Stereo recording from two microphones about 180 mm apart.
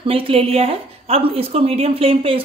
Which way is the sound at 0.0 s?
30° right (ahead or behind).